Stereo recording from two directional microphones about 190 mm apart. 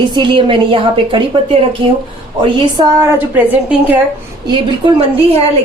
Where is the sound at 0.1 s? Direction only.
25° right (ahead or behind); by 4.0 s 10° right (ahead or behind).